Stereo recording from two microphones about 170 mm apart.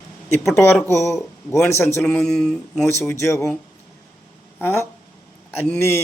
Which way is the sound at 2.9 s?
15° left (ahead or behind).